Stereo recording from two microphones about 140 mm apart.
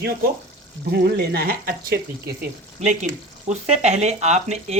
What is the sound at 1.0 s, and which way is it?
Speech, 90° right.